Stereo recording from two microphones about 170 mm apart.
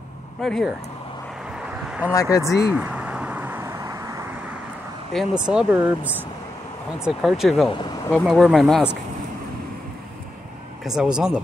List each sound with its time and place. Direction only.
0.4 s speech: centre (ahead or behind)
1.9 s a sound: 10° right (ahead or behind)
2.1 s speech: 20° left (ahead or behind)
2.7 s a sound: 5° right (ahead or behind)
5.1 s speech: 5° right (ahead or behind)
10.8 s speech: 5° right (ahead or behind)